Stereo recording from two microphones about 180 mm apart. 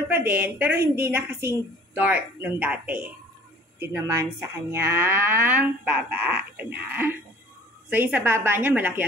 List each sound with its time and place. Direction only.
0.1 s speech: 10° right (ahead or behind)